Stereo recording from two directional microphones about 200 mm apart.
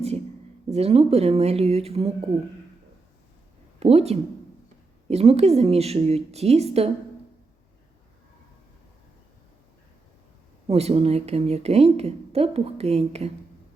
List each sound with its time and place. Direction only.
0.7 s a woman's voice: 30° right (ahead or behind)
3.8 s a woman's voice: 30° right (ahead or behind)
10.7 s a woman's voice: 30° right (ahead or behind)